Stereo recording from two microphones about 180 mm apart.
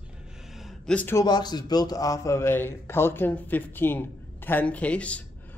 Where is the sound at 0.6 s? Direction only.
Centre (ahead or behind).